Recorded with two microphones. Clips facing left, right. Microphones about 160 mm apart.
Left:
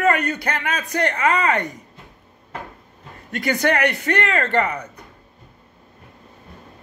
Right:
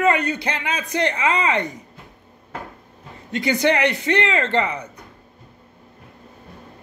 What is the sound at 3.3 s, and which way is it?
A man's voice, 20° right (ahead or behind).